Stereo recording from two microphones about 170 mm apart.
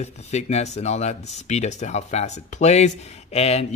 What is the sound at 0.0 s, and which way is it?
Speech, 40° left (ahead or behind).